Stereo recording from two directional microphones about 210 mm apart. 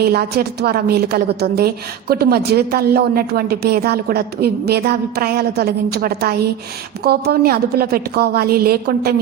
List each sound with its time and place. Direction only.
0.0 s a woman's voice: 45° right (ahead or behind)